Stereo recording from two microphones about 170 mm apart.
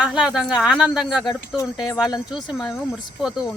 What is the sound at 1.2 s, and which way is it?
Speech, 20° left (ahead or behind).